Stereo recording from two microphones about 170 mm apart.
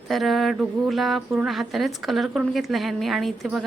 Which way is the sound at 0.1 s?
Centre (ahead or behind).